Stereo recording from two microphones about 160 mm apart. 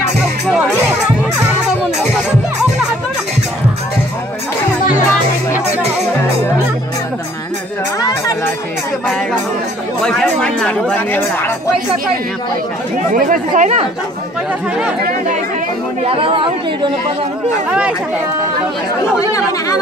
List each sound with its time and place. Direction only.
10.0 s speech: 5° left (ahead or behind)
13.1 s speech: 55° right (ahead or behind)
16.0 s speech: 35° right (ahead or behind)
17.6 s speech: 5° right (ahead or behind)
19.1 s speech: 20° left (ahead or behind)